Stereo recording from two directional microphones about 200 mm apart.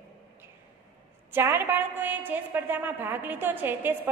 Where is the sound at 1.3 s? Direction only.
10° right (ahead or behind).